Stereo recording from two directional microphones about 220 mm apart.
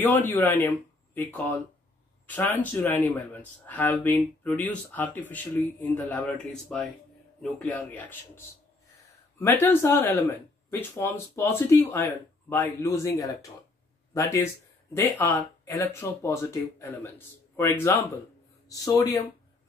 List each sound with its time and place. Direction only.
0.0 s speech: 10° left (ahead or behind)
9.4 s speech: 10° left (ahead or behind)